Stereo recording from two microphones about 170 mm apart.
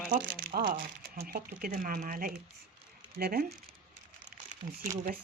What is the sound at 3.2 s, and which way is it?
Speech, 70° right (ahead or behind).